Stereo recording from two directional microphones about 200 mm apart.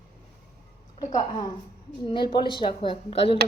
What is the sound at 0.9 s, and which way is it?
A woman's voice, 20° left (ahead or behind).